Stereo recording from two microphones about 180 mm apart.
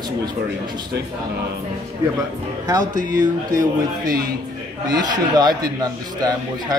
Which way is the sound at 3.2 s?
20° right (ahead or behind).